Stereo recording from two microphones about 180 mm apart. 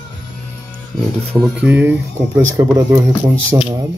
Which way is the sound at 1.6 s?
5° right (ahead or behind).